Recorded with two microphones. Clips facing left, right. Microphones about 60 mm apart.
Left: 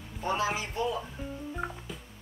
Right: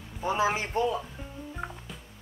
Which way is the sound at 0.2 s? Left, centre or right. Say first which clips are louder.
Right 3 dB; centre.